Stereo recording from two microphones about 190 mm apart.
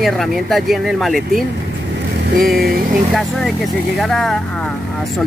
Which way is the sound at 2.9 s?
Centre (ahead or behind).